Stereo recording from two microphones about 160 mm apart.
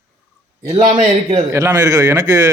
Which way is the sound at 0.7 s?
45° right (ahead or behind).